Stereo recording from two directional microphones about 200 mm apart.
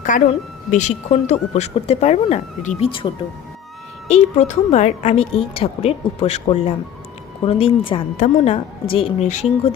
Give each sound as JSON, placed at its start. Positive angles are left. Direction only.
{"t": 0.7, "sound": "a woman's voice", "side_deg": 35}
{"t": 4.1, "sound": "a woman's voice", "side_deg": 35}